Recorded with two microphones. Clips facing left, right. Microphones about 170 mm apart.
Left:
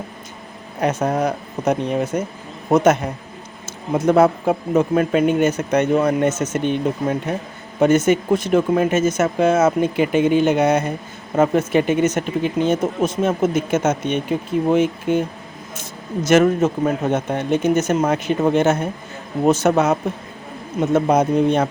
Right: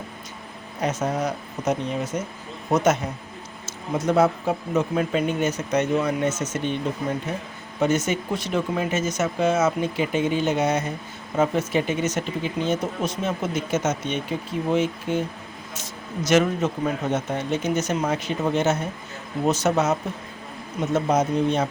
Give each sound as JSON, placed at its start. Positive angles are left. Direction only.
{"t": 0.8, "sound": "speech", "side_deg": 60}